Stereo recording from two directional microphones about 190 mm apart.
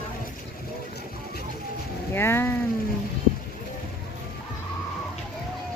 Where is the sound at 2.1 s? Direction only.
10° left (ahead or behind).